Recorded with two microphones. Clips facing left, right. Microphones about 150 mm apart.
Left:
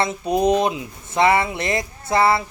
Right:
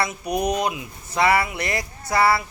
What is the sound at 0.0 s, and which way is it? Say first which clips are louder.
Speech: left 5 dB; 25° left (ahead or behind).